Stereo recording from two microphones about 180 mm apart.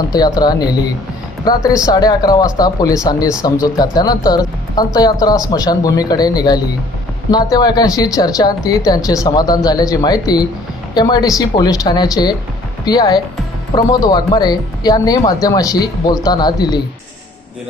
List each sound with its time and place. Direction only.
0.1 s speech: 20° left (ahead or behind)
1.8 s speech: 20° left (ahead or behind)